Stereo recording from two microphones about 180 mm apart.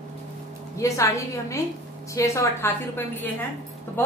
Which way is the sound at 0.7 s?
15° left (ahead or behind).